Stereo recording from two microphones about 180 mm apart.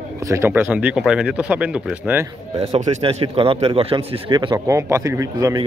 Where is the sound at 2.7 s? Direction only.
35° right (ahead or behind); by 5.7 s 20° right (ahead or behind).